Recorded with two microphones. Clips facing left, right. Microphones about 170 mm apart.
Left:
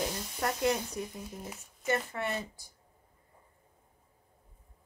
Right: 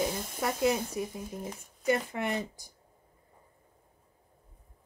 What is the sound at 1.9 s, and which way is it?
Speech, 15° right (ahead or behind).